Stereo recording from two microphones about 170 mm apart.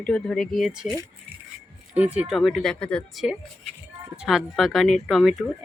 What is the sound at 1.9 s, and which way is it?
Speech, 10° right (ahead or behind).